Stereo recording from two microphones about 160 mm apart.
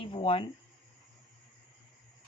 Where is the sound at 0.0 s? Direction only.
35° left (ahead or behind).